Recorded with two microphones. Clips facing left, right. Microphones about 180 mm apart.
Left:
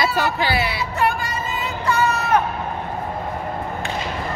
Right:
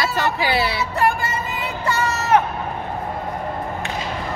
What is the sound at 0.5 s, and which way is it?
Music, 25° right (ahead or behind).